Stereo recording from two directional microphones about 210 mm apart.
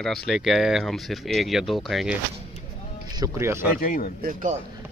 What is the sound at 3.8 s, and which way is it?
Speech, 40° left (ahead or behind).